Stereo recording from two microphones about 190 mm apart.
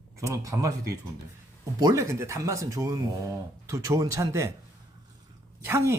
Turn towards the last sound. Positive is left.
turn(degrees=-15)  # may be behind; listen again after turning